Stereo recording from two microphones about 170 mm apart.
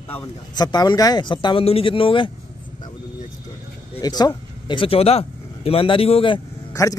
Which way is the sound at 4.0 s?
25° left (ahead or behind).